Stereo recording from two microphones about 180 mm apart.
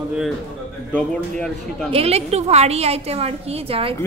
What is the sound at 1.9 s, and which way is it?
A woman's voice, 35° right (ahead or behind).